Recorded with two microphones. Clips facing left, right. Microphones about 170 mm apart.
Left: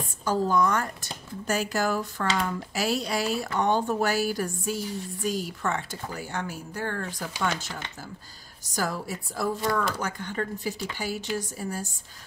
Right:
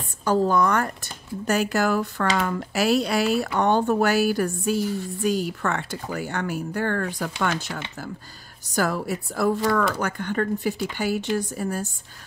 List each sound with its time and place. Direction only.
0.2 s speech: 60° right (ahead or behind)
8.7 s speech: 65° right (ahead or behind)